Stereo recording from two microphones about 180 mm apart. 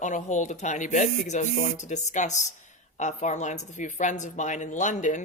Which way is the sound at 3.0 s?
40° left (ahead or behind).